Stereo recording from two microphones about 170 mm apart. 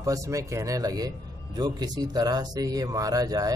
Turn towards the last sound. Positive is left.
turn(degrees=-20)  # may be behind; listen again after turning